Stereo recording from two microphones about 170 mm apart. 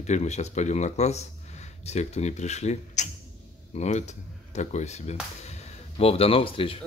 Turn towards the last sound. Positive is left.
turn(degrees=30)  # may be behind; listen again after turning